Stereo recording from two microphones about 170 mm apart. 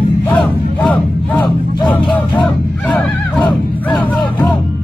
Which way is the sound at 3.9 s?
5° left (ahead or behind).